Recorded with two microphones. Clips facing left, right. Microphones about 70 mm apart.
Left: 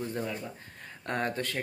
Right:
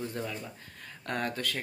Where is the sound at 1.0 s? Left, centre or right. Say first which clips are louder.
Left 2 dB; left.